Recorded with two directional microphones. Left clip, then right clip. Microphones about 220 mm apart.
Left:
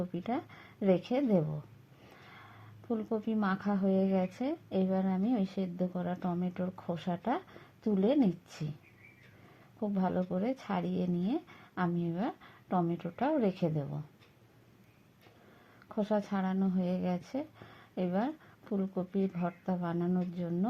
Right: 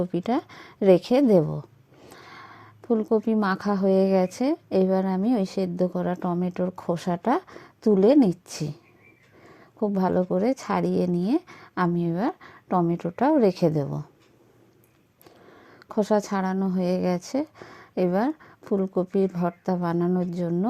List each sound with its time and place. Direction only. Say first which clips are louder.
0.0 s a woman's voice: right 10 dB; 40° right (ahead or behind)
9.8 s a woman's voice: right 10 dB; 40° right (ahead or behind)
15.9 s a woman's voice: right 10 dB; 40° right (ahead or behind)